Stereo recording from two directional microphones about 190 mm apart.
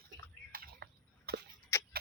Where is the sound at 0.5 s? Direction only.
50° right (ahead or behind).